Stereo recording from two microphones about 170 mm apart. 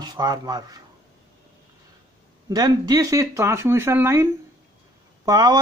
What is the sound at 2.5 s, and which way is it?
Speech, 25° right (ahead or behind).